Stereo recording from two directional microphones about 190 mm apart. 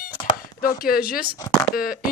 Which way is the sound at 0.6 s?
50° left (ahead or behind).